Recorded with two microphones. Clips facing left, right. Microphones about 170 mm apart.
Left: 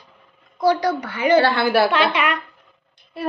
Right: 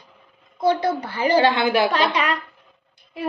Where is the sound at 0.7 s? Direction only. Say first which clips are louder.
Left 1 dB; 30° right (ahead or behind).